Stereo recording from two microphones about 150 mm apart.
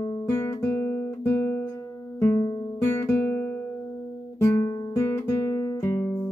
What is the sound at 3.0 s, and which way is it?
Guitar, 15° left (ahead or behind).